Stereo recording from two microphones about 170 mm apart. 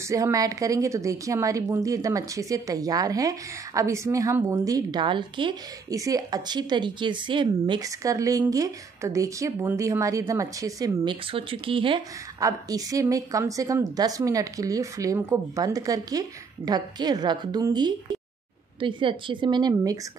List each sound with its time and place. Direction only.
0.1 s speech: 20° right (ahead or behind)
11.3 s speech: 30° right (ahead or behind)
12.4 s speech: 20° right (ahead or behind)